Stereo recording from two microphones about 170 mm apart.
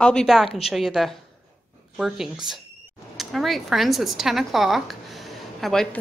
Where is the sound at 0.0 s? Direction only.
5° left (ahead or behind).